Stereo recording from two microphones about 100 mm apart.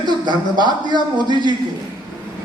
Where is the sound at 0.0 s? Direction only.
50° right (ahead or behind).